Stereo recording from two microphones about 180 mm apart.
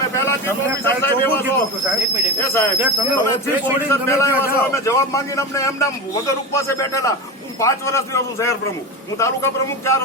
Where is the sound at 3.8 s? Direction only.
15° left (ahead or behind).